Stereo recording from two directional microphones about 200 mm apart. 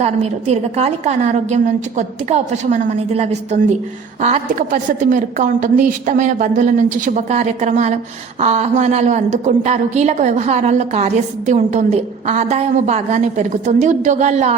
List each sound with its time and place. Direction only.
0.0 s a woman's voice: 35° right (ahead or behind)